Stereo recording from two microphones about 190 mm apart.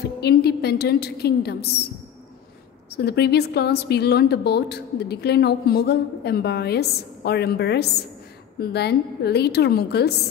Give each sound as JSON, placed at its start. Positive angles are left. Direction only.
{"t": 0.2, "sound": "a woman's voice", "side_deg": 55}
{"t": 2.9, "sound": "a woman's voice", "side_deg": 60}